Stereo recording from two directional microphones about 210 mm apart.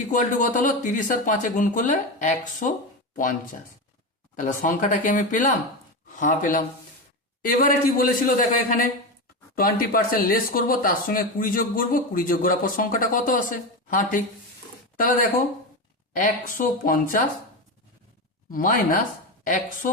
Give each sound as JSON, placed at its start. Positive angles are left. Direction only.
{"t": 0.1, "sound": "speech", "side_deg": 40}
{"t": 4.4, "sound": "a man's voice", "side_deg": 40}
{"t": 9.6, "sound": "speech", "side_deg": 45}
{"t": 18.5, "sound": "speech", "side_deg": 40}